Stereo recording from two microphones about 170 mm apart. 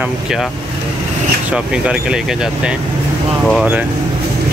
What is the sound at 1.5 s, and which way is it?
Speech, 5° right (ahead or behind).